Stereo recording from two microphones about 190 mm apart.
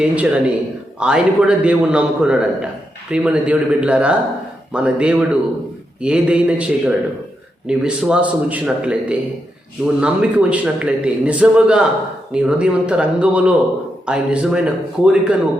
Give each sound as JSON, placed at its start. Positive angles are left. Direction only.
{"t": 0.0, "sound": "a man's voice", "side_deg": -5}